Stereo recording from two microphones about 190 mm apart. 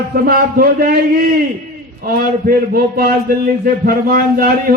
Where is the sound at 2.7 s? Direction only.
50° right (ahead or behind).